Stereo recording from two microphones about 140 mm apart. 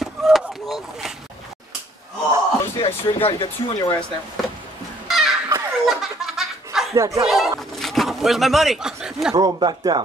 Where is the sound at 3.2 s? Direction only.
40° left (ahead or behind).